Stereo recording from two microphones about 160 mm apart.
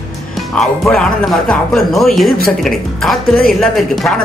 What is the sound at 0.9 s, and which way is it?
Speech, 5° left (ahead or behind).